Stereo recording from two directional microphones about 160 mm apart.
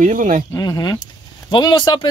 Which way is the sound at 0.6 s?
25° left (ahead or behind).